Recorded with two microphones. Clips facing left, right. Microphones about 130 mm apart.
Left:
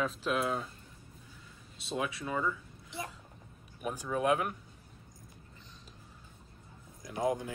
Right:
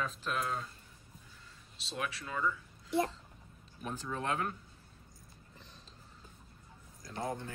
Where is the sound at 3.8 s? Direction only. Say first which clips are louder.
Left 6 dB; 10° left (ahead or behind).